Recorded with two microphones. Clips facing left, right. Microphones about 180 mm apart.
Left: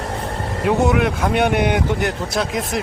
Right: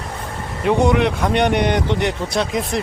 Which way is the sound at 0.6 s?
5° left (ahead or behind).